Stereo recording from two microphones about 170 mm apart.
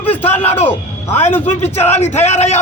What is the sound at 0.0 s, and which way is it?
Music, 10° left (ahead or behind).